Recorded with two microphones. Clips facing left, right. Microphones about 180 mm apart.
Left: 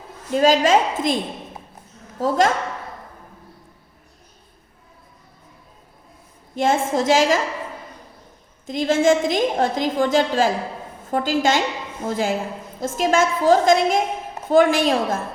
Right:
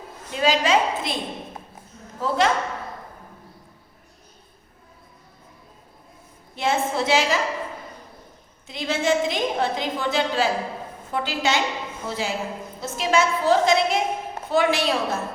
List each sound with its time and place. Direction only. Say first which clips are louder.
0.3 s a woman's voice: left 5 dB; 45° left (ahead or behind)
2.2 s a woman's voice: left 3 dB; 45° left (ahead or behind)
6.6 s a woman's voice: left 4 dB; 45° left (ahead or behind)
8.6 s a woman's voice: left 7 dB; 45° left (ahead or behind)